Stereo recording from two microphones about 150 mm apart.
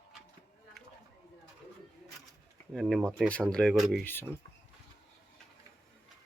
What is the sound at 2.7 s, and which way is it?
Speech, centre (ahead or behind).